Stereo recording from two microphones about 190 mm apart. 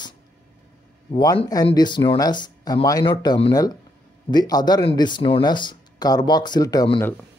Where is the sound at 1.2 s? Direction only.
20° left (ahead or behind).